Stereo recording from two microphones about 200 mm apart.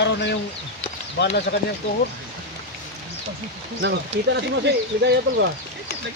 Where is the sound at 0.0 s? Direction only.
60° left (ahead or behind).